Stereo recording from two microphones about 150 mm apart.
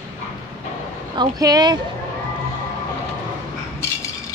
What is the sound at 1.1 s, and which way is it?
Speech, 25° right (ahead or behind).